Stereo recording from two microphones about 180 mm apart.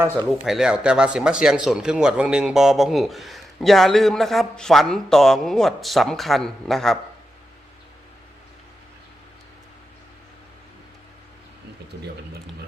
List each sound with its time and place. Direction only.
0.4 s speech: 5° right (ahead or behind)